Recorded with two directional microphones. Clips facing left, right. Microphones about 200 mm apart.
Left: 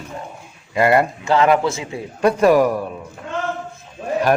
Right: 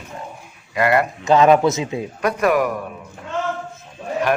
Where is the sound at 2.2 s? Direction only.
30° left (ahead or behind).